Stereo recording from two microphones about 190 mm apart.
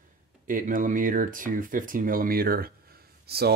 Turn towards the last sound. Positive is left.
turn(degrees=-55)  # may be behind; listen again after turning